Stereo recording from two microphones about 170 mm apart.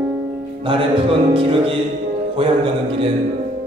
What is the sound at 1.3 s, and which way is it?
Music, 35° right (ahead or behind).